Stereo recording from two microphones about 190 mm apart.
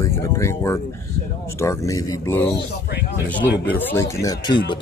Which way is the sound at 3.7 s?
10° left (ahead or behind).